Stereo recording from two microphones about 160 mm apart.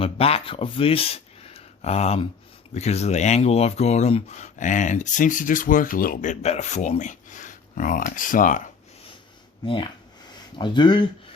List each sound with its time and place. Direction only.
0.0 s speech: 35° left (ahead or behind); by 8.6 s 55° left (ahead or behind)
9.6 s speech: 30° left (ahead or behind)